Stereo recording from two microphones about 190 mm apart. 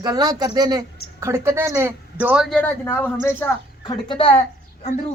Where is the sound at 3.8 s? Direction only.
25° left (ahead or behind).